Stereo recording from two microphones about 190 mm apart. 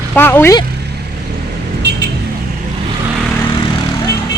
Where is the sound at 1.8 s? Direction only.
65° right (ahead or behind).